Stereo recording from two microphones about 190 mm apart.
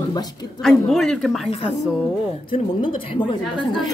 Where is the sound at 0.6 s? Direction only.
Centre (ahead or behind).